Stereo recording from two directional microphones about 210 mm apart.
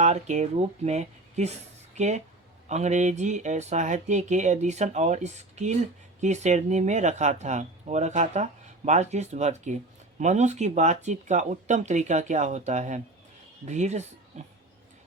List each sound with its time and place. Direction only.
0.0 s speech: 35° right (ahead or behind)